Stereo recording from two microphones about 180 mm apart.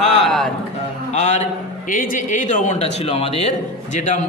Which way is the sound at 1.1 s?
40° left (ahead or behind).